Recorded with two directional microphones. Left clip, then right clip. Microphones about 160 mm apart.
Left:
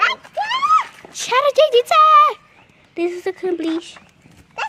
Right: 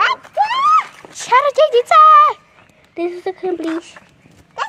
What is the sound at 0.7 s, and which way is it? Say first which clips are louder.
Speech: right 2 dB; 15° left (ahead or behind).